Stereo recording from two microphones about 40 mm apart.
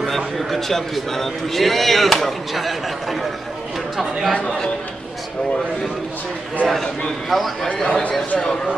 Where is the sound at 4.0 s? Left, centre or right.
Centre.